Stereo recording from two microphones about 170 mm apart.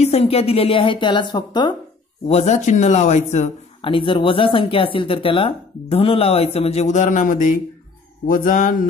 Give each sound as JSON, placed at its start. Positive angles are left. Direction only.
{"t": 0.0, "sound": "speech", "side_deg": 35}
{"t": 2.2, "sound": "speech", "side_deg": 40}
{"t": 3.8, "sound": "speech", "side_deg": 30}
{"t": 8.3, "sound": "mantra", "side_deg": 50}